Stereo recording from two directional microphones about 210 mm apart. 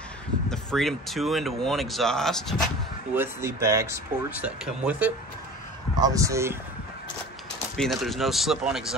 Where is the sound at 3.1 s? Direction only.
10° right (ahead or behind).